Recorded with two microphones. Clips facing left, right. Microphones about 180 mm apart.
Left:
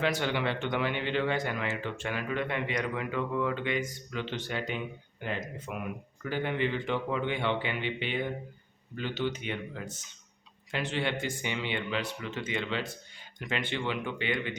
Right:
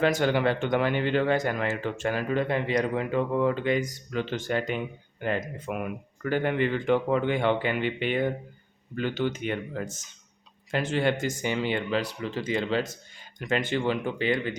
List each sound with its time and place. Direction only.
0.0 s speech: 45° right (ahead or behind)